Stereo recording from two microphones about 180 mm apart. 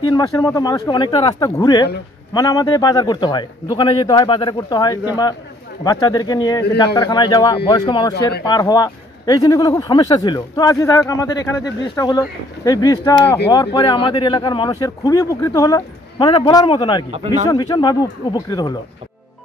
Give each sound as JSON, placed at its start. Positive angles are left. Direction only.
{"t": 0.0, "sound": "speech", "side_deg": 20}
{"t": 13.1, "sound": "speech", "side_deg": 10}
{"t": 13.7, "sound": "speech", "side_deg": 25}
{"t": 17.1, "sound": "speech", "side_deg": -40}
{"t": 17.5, "sound": "speech", "side_deg": 25}